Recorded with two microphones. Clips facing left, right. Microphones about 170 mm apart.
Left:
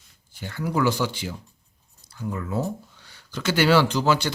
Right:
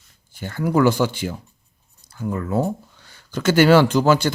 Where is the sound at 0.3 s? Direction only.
50° right (ahead or behind).